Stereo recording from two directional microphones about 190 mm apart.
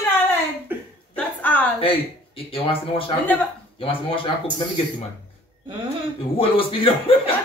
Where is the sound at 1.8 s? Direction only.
30° left (ahead or behind).